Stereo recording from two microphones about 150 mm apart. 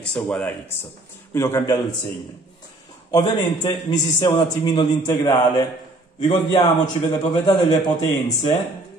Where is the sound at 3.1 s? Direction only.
25° left (ahead or behind).